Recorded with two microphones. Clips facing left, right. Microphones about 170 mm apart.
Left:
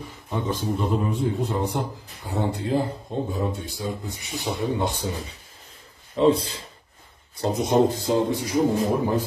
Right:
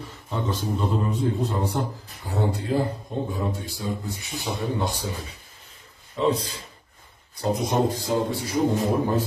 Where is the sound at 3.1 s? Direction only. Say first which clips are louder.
Left 1 dB; 25° left (ahead or behind).